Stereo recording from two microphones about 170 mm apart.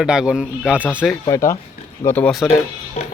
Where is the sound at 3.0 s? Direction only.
40° left (ahead or behind).